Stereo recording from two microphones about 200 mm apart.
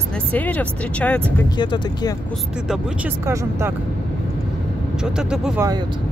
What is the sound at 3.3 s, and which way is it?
Speech, 15° right (ahead or behind).